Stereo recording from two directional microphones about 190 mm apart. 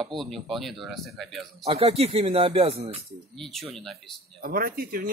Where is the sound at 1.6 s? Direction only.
30° right (ahead or behind).